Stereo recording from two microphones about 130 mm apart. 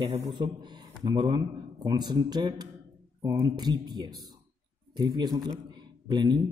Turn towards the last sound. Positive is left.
turn(degrees=-35)  # may be behind; listen again after turning